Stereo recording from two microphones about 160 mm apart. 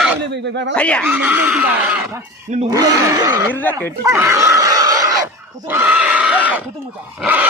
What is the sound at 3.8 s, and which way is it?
Speech, 15° right (ahead or behind).